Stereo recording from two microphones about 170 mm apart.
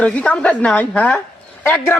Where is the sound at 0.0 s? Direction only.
5° left (ahead or behind).